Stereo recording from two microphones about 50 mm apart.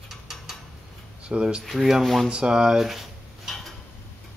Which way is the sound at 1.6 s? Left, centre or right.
Centre.